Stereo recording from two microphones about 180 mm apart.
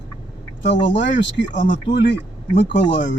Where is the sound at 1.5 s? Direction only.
50° left (ahead or behind).